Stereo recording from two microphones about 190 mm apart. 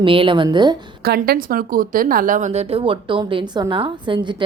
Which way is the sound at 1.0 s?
55° right (ahead or behind).